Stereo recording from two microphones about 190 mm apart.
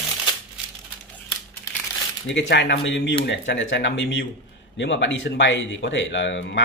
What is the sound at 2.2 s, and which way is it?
Speech, 70° left (ahead or behind).